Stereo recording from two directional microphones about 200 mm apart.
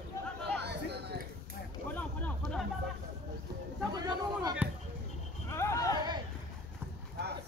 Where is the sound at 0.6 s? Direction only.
55° right (ahead or behind).